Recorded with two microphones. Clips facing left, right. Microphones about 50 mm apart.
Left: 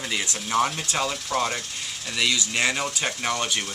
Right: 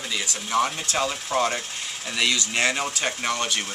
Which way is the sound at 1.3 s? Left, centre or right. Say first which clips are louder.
Right 2 dB; right.